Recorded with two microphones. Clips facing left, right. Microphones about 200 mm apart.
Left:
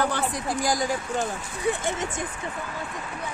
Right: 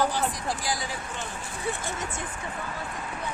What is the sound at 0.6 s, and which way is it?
Speech, 45° left (ahead or behind).